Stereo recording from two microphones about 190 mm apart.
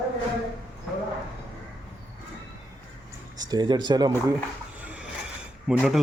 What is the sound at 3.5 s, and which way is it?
Speech, 20° right (ahead or behind).